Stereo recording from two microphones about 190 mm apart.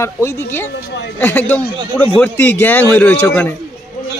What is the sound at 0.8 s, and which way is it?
Speech, 55° left (ahead or behind).